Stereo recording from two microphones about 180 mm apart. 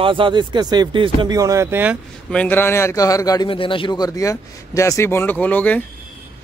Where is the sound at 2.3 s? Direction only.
10° left (ahead or behind).